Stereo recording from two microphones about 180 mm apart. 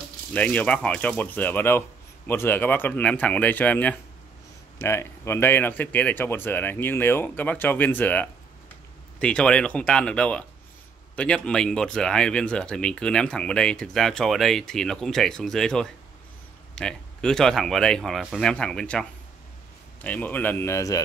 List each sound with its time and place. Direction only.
0.3 s speech: 10° left (ahead or behind)